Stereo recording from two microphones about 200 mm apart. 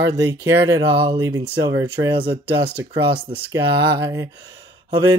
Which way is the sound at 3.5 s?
20° right (ahead or behind).